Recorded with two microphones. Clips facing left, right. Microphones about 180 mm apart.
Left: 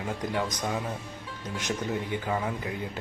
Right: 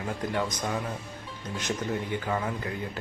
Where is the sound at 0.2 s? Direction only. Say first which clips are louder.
Right 1 dB; 15° left (ahead or behind).